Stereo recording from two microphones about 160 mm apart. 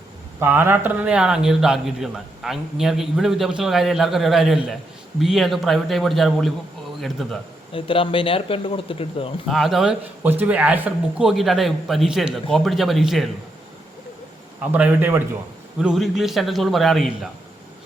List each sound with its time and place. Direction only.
0.3 s a man's voice: 15° right (ahead or behind)
7.7 s speech: 35° left (ahead or behind)
9.5 s a man's voice: centre (ahead or behind)
14.6 s a man's voice: 10° right (ahead or behind)